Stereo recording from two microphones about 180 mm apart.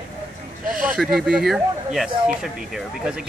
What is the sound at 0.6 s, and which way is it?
Speech, 50° right (ahead or behind).